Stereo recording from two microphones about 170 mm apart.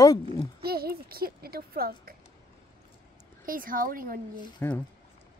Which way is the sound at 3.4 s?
55° right (ahead or behind).